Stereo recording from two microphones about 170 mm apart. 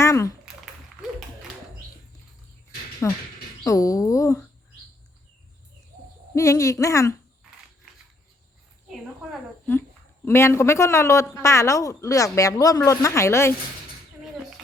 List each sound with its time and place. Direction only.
0.0 s a sound: 15° left (ahead or behind)
3.0 s speech: 15° left (ahead or behind)
6.3 s speech: 20° left (ahead or behind)
10.2 s a man's voice: 15° left (ahead or behind)